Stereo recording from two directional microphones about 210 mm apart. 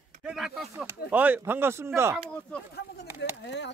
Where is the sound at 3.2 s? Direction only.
55° left (ahead or behind).